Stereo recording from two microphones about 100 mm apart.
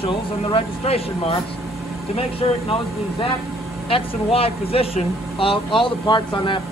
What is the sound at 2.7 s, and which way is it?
Speech, 65° left (ahead or behind).